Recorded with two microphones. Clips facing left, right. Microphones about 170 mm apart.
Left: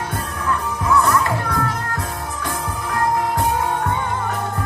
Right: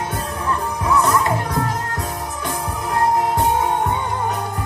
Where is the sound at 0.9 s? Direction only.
20° right (ahead or behind).